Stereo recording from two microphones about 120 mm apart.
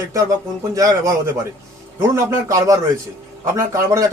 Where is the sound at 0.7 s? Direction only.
25° right (ahead or behind).